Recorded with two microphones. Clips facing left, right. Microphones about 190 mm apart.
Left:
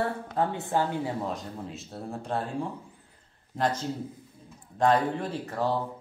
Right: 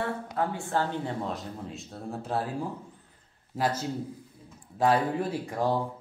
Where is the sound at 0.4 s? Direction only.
20° left (ahead or behind).